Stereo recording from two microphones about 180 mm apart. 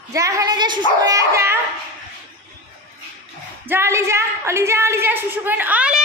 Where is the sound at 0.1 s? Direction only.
20° right (ahead or behind).